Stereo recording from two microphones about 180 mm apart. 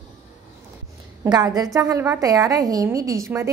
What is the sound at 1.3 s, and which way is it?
A woman's voice, 20° right (ahead or behind).